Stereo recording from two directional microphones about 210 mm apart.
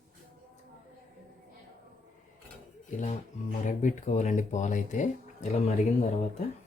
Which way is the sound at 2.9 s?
35° left (ahead or behind).